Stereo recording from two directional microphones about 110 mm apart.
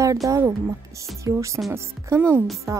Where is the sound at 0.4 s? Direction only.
25° right (ahead or behind).